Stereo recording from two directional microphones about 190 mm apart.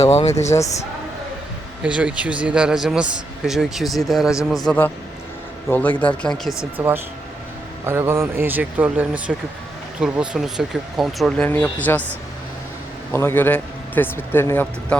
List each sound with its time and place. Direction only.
0.0 s speech: 35° left (ahead or behind)
1.8 s a man's voice: 5° right (ahead or behind)
6.6 s a man's voice: 10° right (ahead or behind); by 12.0 s 10° left (ahead or behind)
13.1 s a man's voice: 10° left (ahead or behind)